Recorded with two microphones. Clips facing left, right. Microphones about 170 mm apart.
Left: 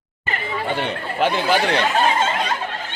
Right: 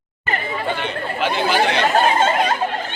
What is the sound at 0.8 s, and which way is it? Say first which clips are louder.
Speech: left 2 dB; 50° left (ahead or behind).